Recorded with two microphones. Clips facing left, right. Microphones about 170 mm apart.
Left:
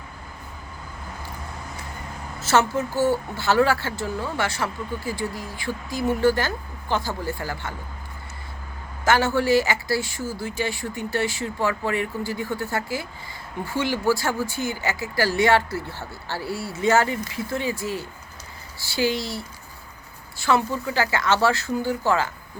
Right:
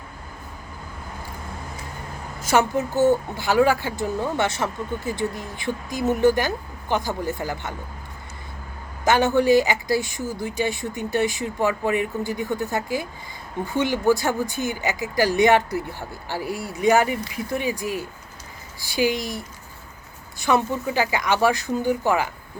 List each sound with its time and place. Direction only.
2.4 s speech: 15° right (ahead or behind)
9.0 s speech: 20° right (ahead or behind)